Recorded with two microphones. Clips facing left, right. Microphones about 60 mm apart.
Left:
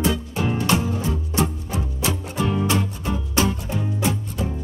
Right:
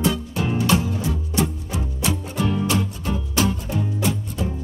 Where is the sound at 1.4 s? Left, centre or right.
Left.